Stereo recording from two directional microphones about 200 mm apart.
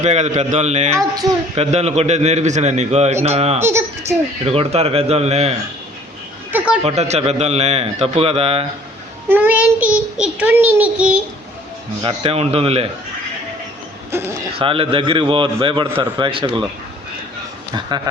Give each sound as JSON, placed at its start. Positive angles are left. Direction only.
{"t": 0.0, "sound": "a man's voice", "side_deg": -35}
{"t": 3.6, "sound": "a child's voice", "side_deg": -10}
{"t": 4.4, "sound": "a man's voice", "side_deg": -30}
{"t": 6.8, "sound": "a man's voice", "side_deg": -35}
{"t": 9.3, "sound": "child singing", "side_deg": -10}
{"t": 10.2, "sound": "a child's voice", "side_deg": -5}
{"t": 12.0, "sound": "speech", "side_deg": -30}
{"t": 14.1, "sound": "a child's voice", "side_deg": -10}
{"t": 14.6, "sound": "speech", "side_deg": -25}
{"t": 17.7, "sound": "speech", "side_deg": -20}